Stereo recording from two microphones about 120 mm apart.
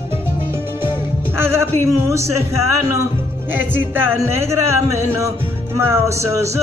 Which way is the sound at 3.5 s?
15° right (ahead or behind).